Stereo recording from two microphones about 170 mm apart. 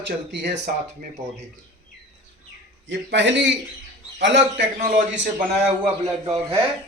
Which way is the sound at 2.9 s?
90° right.